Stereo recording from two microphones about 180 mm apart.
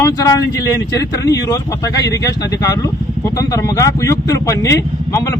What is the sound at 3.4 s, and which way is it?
Speech, 20° left (ahead or behind).